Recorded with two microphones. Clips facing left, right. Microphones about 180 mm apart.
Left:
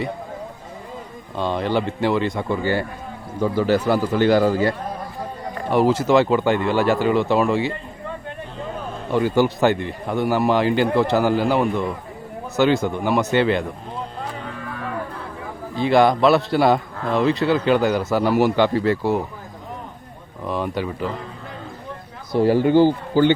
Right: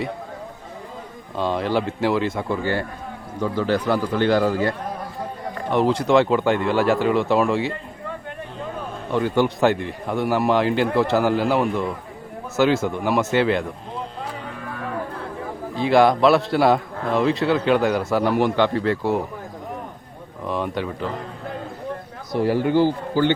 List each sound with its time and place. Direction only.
1.4 s a man's voice: centre (ahead or behind)
5.7 s a man's voice: 5° left (ahead or behind)
9.1 s a man's voice: 5° left (ahead or behind)
15.7 s a man's voice: centre (ahead or behind)
20.4 s a man's voice: centre (ahead or behind)
22.3 s speech: 25° left (ahead or behind)